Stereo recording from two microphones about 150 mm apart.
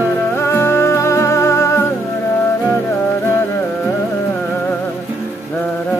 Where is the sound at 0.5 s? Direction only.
15° left (ahead or behind).